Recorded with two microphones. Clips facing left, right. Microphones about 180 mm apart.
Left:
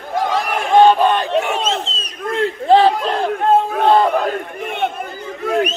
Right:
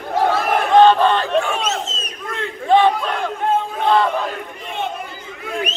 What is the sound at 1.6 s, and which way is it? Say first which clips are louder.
Crowd: left 2 dB; 30° left (ahead or behind).